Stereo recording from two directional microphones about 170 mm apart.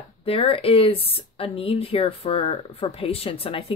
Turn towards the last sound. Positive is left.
turn(degrees=35)  # may be behind; listen again after turning